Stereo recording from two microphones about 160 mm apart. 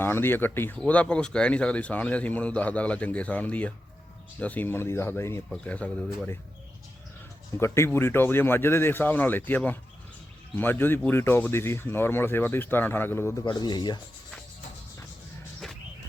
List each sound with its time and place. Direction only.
0.0 s speech: 15° left (ahead or behind)
7.6 s speech: 15° left (ahead or behind)
13.4 s speech: 25° left (ahead or behind)